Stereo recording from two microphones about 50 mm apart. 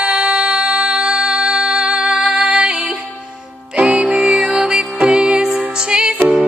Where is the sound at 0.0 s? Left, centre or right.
Centre.